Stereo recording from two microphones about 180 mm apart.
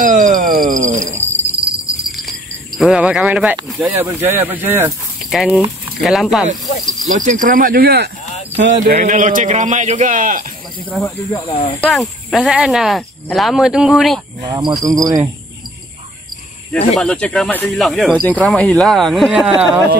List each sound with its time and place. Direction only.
0.0 s a man's voice: 45° right (ahead or behind)
2.0 s cricket: centre (ahead or behind)
2.8 s speech: 5° right (ahead or behind)
5.2 s speech: centre (ahead or behind)
7.1 s a man's voice: 45° right (ahead or behind)
10.9 s speech: centre (ahead or behind)
11.4 s speech: 30° left (ahead or behind)
11.8 s speech: centre (ahead or behind)
14.4 s cricket: 20° right (ahead or behind)
16.7 s speech: 5° left (ahead or behind)